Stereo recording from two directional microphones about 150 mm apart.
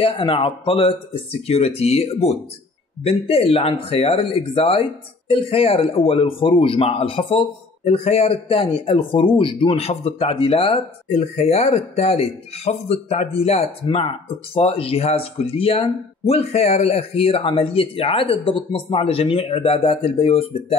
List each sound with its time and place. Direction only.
0.0 s speech: 35° left (ahead or behind)